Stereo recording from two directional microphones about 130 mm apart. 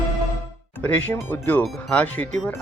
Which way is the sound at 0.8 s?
10° left (ahead or behind).